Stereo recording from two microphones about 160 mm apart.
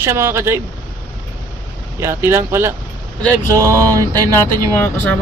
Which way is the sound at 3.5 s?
20° right (ahead or behind).